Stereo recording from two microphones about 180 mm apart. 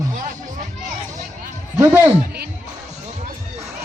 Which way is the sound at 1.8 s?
20° right (ahead or behind).